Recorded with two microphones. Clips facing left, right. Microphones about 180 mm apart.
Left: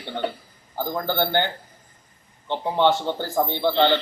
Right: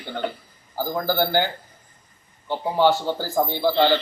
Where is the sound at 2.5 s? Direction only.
5° right (ahead or behind).